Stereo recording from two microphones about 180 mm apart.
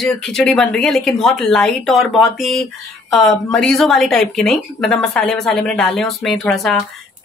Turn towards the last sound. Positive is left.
turn(degrees=0)  # may be behind; listen again after turning